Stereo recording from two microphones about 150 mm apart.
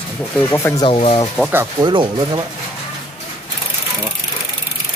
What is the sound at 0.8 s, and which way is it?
Speech, 40° left (ahead or behind).